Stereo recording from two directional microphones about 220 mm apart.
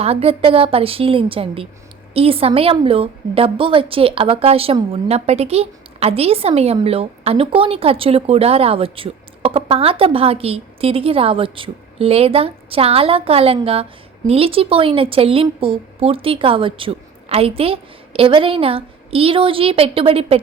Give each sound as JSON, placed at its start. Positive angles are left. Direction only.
{"t": 0.0, "sound": "a woman's voice", "side_deg": -25}